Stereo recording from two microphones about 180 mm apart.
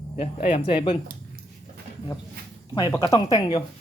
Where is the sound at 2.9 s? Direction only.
20° left (ahead or behind).